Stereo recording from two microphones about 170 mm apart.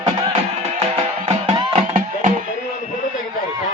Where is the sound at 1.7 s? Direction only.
40° right (ahead or behind).